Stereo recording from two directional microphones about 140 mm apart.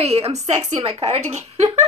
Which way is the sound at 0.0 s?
45° right (ahead or behind).